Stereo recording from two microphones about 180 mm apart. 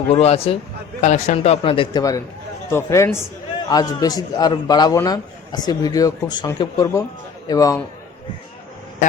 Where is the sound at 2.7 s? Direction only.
15° left (ahead or behind).